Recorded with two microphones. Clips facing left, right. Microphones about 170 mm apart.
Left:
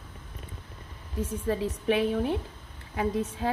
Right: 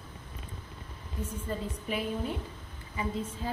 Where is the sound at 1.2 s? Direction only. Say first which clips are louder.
Left 7 dB; 85° left.